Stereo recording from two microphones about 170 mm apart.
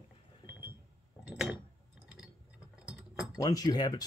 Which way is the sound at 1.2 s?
5° right (ahead or behind).